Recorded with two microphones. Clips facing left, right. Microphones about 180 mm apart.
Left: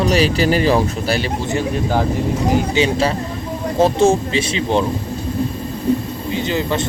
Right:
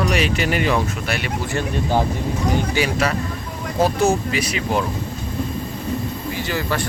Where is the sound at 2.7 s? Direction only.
25° left (ahead or behind).